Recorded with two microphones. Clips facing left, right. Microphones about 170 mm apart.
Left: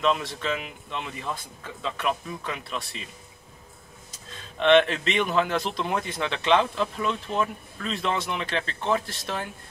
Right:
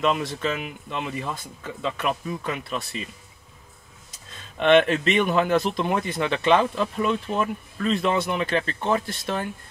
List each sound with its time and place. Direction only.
0.0 s speech: 5° right (ahead or behind)
4.6 s speech: 5° right (ahead or behind)
4.8 s a man's voice: 45° right (ahead or behind)
5.1 s speech: 5° right (ahead or behind)